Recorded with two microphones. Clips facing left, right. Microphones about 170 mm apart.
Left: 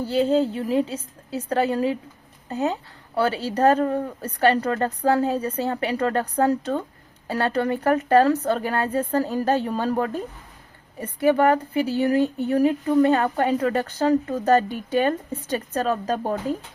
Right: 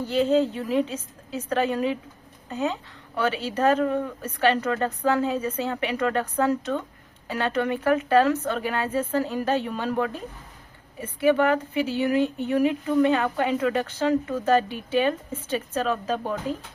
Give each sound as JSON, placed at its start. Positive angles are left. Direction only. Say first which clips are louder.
{"t": 0.1, "sound": "speech", "louder": "left 1 dB", "side_deg": 35}